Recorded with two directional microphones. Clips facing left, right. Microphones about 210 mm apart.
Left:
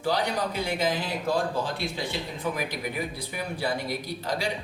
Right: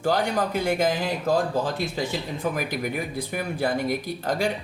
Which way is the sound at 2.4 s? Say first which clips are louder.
Right 3 dB; 50° right (ahead or behind).